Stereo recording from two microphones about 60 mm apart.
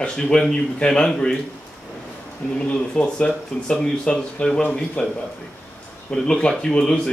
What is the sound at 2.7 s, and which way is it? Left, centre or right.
Speech, centre.